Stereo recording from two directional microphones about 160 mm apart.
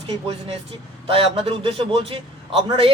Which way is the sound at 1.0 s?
35° right (ahead or behind).